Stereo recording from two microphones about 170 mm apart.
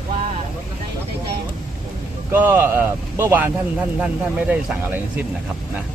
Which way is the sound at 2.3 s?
15° right (ahead or behind).